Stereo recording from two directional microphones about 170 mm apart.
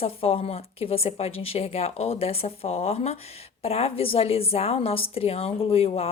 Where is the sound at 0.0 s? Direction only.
35° left (ahead or behind).